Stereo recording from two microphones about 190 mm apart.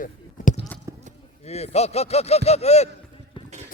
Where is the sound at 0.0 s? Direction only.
45° left (ahead or behind).